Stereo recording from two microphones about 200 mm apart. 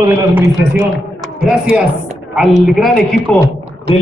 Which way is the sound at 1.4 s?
5° right (ahead or behind).